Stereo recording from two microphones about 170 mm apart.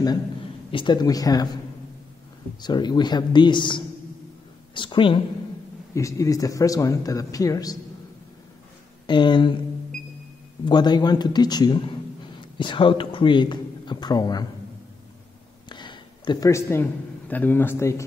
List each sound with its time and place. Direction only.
0.7 s speech: 30° left (ahead or behind)
2.6 s speech: 25° left (ahead or behind)
5.9 s speech: 20° left (ahead or behind)
9.0 s speech: 25° left (ahead or behind)
10.6 s speech: 25° left (ahead or behind)
15.7 s a sound: 25° left (ahead or behind)
17.3 s a man's voice: 10° left (ahead or behind)